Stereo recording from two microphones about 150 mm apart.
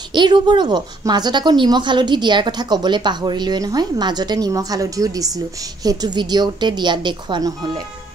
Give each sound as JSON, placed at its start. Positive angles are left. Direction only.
{"t": 0.1, "sound": "a woman's voice", "side_deg": -30}